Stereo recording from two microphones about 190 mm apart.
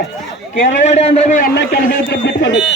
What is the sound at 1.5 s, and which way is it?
Speech, 60° left (ahead or behind).